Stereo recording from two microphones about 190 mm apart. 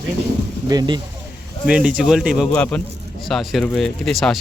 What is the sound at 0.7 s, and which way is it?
Speech, 20° right (ahead or behind).